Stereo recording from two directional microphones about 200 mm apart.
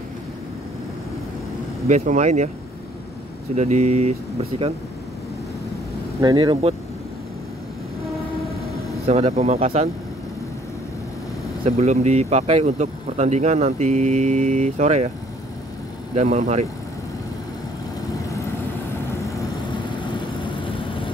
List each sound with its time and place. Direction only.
1.9 s speech: 35° right (ahead or behind)
3.5 s speech: 35° right (ahead or behind)
6.2 s speech: 20° right (ahead or behind)
9.0 s speech: 30° right (ahead or behind)
11.6 s speech: 35° right (ahead or behind)
16.2 s speech: 35° right (ahead or behind)
20.0 s vehicle: 25° left (ahead or behind)